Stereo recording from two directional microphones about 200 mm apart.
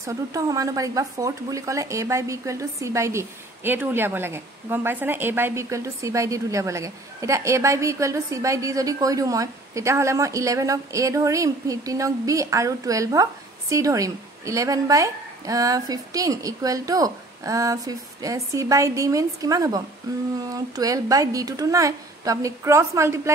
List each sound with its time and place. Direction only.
0.0 s speech: 15° right (ahead or behind)